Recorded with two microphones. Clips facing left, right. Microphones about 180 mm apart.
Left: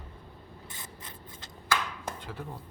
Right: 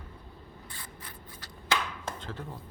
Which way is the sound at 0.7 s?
20° left (ahead or behind).